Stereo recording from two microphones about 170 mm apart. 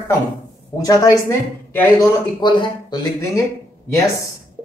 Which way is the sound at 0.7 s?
20° left (ahead or behind).